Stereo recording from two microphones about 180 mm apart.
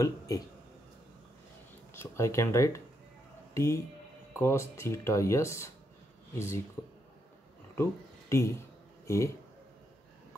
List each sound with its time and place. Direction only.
2.0 s speech: 15° left (ahead or behind)
7.7 s speech: 15° left (ahead or behind)